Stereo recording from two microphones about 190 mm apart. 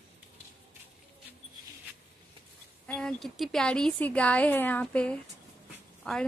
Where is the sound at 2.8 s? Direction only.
5° left (ahead or behind).